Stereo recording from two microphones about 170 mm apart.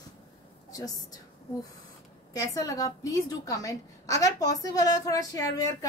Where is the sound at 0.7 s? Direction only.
20° left (ahead or behind).